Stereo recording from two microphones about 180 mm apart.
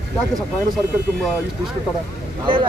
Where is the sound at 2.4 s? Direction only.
30° right (ahead or behind).